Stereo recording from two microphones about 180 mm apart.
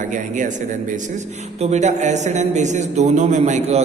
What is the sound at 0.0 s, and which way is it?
A man's voice, 45° right (ahead or behind).